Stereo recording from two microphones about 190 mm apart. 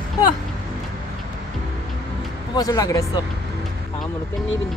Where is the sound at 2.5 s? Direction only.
20° left (ahead or behind).